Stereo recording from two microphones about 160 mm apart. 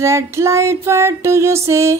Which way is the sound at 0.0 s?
15° right (ahead or behind).